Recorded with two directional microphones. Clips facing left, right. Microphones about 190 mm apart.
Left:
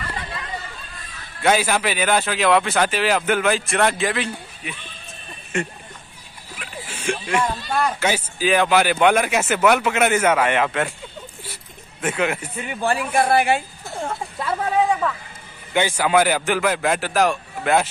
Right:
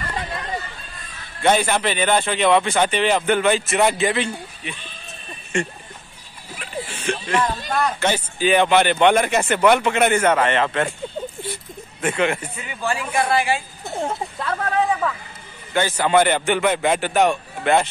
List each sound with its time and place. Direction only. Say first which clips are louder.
1.4 s speech: right 1 dB; 5° left (ahead or behind)
12.0 s speech: right 2 dB; 5° left (ahead or behind)
12.5 s speech: left 3 dB; 55° left (ahead or behind)
14.4 s speech: left 2 dB; 10° left (ahead or behind)
16.1 s speech: right 2 dB; 5° left (ahead or behind)